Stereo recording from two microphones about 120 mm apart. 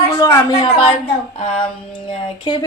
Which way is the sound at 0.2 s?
30° left (ahead or behind).